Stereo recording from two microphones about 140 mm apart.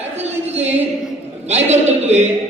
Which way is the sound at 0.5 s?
50° right (ahead or behind).